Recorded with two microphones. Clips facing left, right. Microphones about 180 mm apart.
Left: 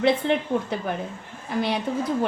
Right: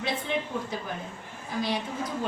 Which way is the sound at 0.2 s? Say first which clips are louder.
Left 7 dB; 70° left (ahead or behind).